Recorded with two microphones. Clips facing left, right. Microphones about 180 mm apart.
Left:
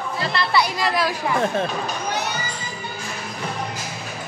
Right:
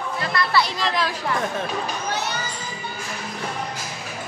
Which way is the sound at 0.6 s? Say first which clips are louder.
Left 3 dB; 10° left (ahead or behind).